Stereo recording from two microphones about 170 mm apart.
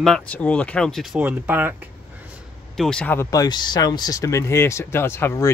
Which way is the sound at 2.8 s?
5° left (ahead or behind).